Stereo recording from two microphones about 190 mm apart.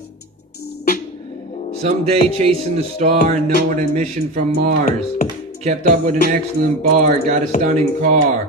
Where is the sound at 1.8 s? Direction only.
35° right (ahead or behind).